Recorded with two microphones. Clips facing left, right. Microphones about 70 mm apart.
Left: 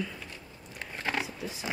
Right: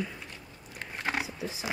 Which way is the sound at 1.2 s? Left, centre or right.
Centre.